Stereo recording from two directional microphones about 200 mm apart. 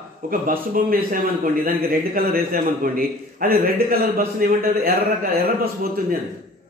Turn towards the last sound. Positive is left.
turn(degrees=-45)  # may be behind; listen again after turning